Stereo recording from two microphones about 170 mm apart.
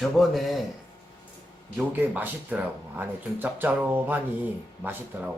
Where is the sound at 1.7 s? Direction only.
10° right (ahead or behind).